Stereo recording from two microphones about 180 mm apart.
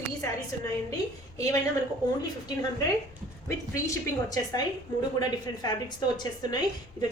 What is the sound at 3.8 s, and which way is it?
Speech, 20° left (ahead or behind).